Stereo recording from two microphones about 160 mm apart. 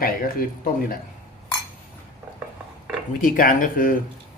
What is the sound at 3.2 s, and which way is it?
Speech, 60° left (ahead or behind).